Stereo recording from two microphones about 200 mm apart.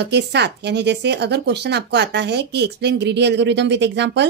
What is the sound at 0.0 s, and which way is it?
Speech, 55° right (ahead or behind).